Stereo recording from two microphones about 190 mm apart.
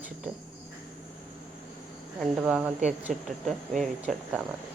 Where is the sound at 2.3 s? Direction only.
5° right (ahead or behind).